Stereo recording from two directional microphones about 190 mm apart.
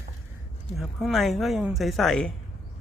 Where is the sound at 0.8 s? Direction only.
Centre (ahead or behind).